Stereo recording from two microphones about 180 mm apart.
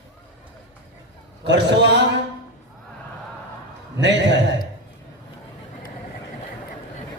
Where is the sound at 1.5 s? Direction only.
75° right (ahead or behind).